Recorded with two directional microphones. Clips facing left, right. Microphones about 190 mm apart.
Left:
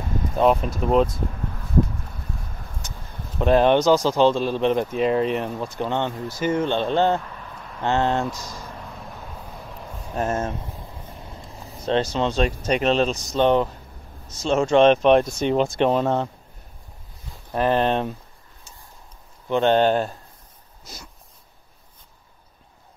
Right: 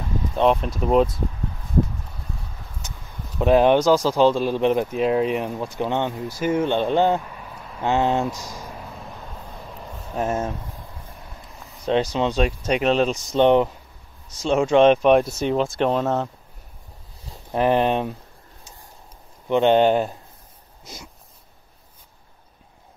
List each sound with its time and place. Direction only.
0.4 s speech: centre (ahead or behind)
3.3 s speech: 10° right (ahead or behind)
6.4 s a sound: 10° right (ahead or behind)
10.1 s speech: centre (ahead or behind)
10.6 s a sound: 25° left (ahead or behind)
11.9 s speech: 15° right (ahead or behind)
13.3 s speech: 20° right (ahead or behind); by 16.3 s centre (ahead or behind)
17.5 s speech: 15° right (ahead or behind)
19.5 s speech: 15° right (ahead or behind)